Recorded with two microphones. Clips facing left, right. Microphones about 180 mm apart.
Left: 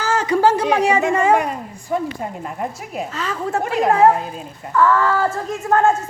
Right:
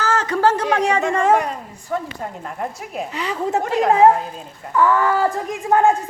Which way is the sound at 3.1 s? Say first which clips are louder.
Right 2 dB; 15° right (ahead or behind).